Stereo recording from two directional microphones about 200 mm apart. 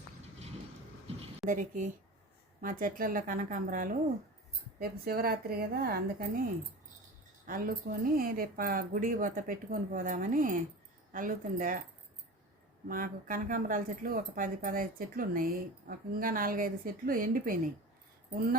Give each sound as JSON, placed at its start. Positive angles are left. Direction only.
{"t": 1.0, "sound": "a sound", "side_deg": -30}
{"t": 1.5, "sound": "speech", "side_deg": -40}
{"t": 12.9, "sound": "speech", "side_deg": -45}